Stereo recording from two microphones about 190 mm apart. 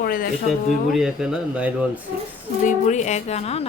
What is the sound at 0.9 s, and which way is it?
A man's voice, 5° right (ahead or behind).